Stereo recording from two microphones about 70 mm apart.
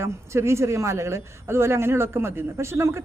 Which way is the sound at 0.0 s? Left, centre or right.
Right.